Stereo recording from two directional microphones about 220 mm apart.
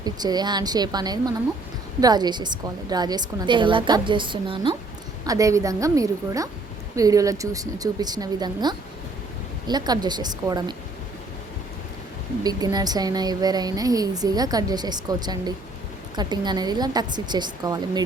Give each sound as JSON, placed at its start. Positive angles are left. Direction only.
{"t": 0.0, "sound": "a woman's voice", "side_deg": -20}
{"t": 12.4, "sound": "a woman's voice", "side_deg": -15}